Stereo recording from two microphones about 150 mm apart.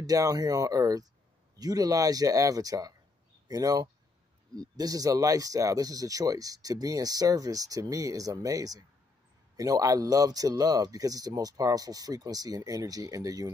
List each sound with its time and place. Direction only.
0.0 s speech: 25° right (ahead or behind)